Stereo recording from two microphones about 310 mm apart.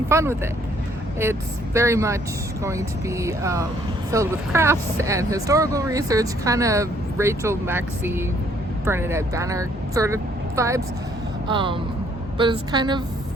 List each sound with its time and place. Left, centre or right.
0.1 s speech: centre